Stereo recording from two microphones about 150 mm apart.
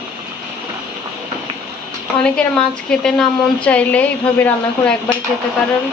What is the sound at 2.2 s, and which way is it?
A woman's voice, 5° left (ahead or behind).